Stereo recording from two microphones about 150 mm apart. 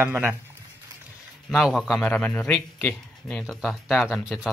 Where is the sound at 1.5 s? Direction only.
Centre (ahead or behind).